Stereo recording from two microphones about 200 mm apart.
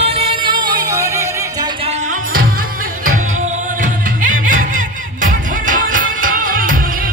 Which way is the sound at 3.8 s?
40° right (ahead or behind).